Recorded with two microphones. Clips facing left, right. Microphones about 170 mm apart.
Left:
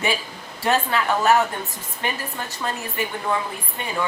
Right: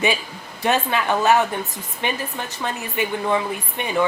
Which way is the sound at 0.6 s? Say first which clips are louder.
Right 1 dB; 20° right (ahead or behind).